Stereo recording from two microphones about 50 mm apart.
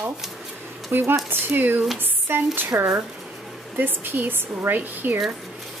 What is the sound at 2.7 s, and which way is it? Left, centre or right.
Speech, right.